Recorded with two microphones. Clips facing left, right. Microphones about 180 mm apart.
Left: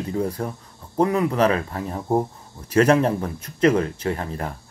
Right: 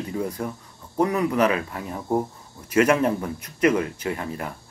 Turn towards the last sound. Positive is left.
turn(degrees=35)  # may be behind; listen again after turning